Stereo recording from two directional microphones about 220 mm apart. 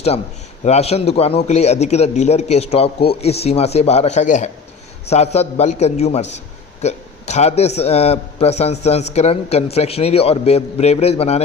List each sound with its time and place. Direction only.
0.6 s a man's voice: 30° left (ahead or behind)